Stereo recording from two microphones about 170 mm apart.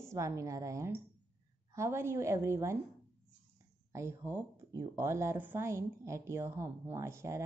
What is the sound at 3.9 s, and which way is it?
A woman's voice, 15° right (ahead or behind).